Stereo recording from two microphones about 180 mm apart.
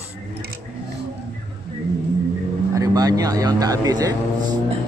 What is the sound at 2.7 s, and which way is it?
Speech, 20° right (ahead or behind).